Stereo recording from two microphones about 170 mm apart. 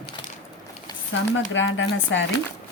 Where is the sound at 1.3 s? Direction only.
90° left.